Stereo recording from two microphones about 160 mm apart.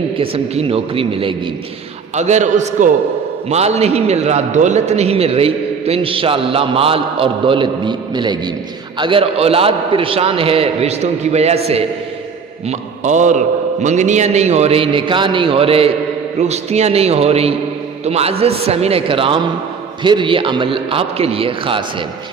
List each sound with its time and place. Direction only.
0.2 s a man's voice: 35° right (ahead or behind)
2.1 s a man's voice: 45° right (ahead or behind)